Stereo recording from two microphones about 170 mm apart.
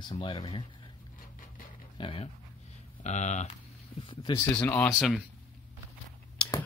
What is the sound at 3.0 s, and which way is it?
Speech, 45° left (ahead or behind).